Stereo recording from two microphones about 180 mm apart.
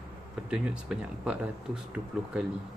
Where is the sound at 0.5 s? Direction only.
5° right (ahead or behind).